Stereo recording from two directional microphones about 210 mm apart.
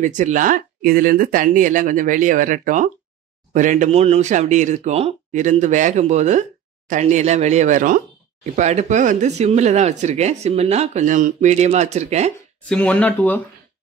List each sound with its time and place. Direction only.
0.0 s speech: 35° right (ahead or behind)
12.6 s speech: 5° left (ahead or behind)